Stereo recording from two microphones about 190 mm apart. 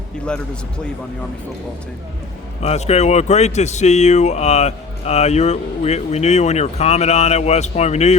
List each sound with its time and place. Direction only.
2.6 s speech: 35° left (ahead or behind)